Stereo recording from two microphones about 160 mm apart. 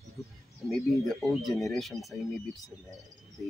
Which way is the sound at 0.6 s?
Centre (ahead or behind).